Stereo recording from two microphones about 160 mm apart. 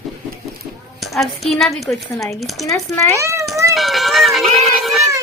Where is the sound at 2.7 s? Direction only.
15° left (ahead or behind).